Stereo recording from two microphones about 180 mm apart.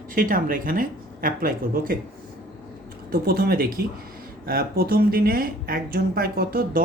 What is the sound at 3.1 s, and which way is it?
A woman's voice, 55° right (ahead or behind).